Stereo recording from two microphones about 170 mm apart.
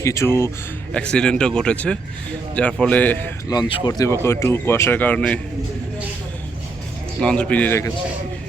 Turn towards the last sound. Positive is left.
turn(degrees=10)  # may be behind; listen again after turning